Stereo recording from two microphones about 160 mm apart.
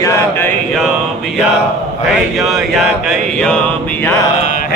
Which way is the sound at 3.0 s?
5° left (ahead or behind).